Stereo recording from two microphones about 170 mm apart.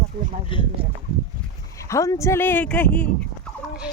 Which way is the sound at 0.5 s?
30° left (ahead or behind).